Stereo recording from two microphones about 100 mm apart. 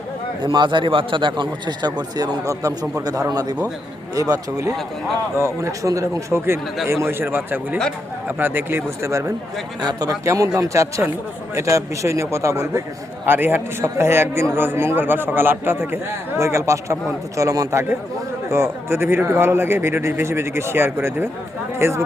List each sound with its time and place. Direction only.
0.4 s a man's voice: 50° right (ahead or behind); by 22.0 s 25° right (ahead or behind)